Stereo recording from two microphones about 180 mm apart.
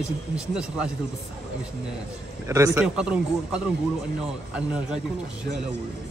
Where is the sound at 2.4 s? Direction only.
15° right (ahead or behind).